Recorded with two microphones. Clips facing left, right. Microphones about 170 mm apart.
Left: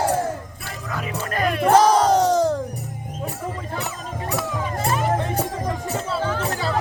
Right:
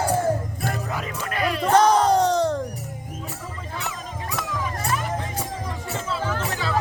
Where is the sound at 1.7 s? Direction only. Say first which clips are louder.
Left 1 dB; centre (ahead or behind).